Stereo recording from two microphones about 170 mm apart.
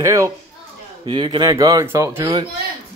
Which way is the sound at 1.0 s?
30° right (ahead or behind).